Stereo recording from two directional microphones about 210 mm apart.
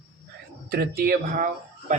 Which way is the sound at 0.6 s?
45° right (ahead or behind).